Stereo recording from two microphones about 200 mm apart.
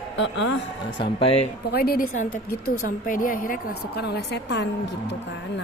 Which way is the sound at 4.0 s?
55° left (ahead or behind).